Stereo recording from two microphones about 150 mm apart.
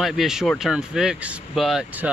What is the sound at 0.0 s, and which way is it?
Speech, centre (ahead or behind).